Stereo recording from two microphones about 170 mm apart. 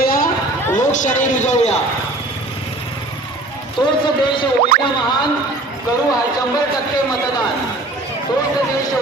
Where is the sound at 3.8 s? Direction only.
30° left (ahead or behind).